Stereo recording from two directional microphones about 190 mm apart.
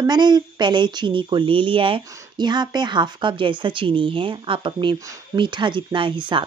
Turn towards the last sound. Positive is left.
turn(degrees=-25)  # may be behind; listen again after turning